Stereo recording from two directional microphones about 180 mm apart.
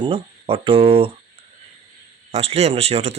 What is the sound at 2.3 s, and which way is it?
Speech, 35° right (ahead or behind).